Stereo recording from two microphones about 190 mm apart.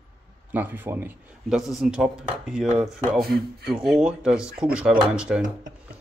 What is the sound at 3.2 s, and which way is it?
Speech, 55° right (ahead or behind).